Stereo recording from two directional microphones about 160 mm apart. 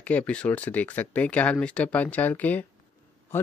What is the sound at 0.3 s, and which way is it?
Speech, 10° left (ahead or behind).